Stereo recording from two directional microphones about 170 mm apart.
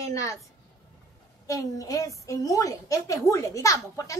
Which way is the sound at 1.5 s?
20° left (ahead or behind).